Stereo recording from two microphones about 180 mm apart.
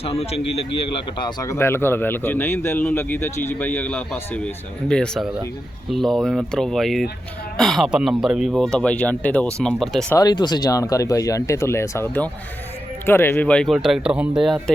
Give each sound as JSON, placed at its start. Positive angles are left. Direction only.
{"t": 0.0, "sound": "a man's voice", "side_deg": 35}
{"t": 10.2, "sound": "speech", "side_deg": 25}